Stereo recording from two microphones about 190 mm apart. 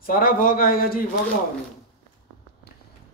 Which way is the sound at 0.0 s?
45° left (ahead or behind).